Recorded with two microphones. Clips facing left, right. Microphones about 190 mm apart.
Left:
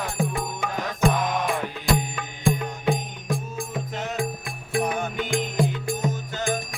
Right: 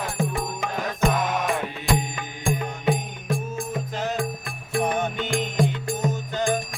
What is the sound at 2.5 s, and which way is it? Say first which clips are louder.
Music: left 1 dB; 5° right (ahead or behind).